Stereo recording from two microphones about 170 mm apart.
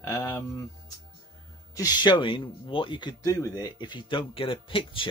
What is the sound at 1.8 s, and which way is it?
Speech, 25° left (ahead or behind).